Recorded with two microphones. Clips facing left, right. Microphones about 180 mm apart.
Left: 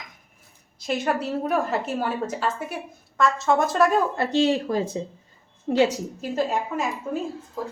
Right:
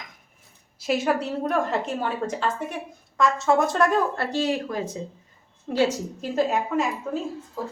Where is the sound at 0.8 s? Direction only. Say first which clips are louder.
Right 2 dB; 5° right (ahead or behind).